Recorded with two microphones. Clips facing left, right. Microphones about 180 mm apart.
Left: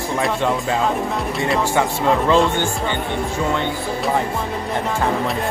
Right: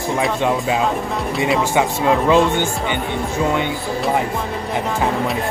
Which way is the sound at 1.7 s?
15° right (ahead or behind).